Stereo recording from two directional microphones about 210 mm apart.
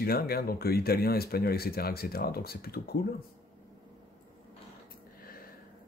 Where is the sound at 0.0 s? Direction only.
45° left (ahead or behind).